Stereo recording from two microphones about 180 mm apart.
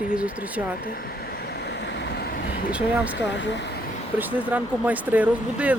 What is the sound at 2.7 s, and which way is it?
Speech, 5° right (ahead or behind).